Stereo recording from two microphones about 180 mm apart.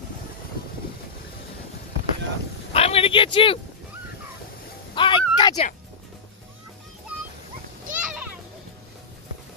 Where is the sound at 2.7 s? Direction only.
35° left (ahead or behind).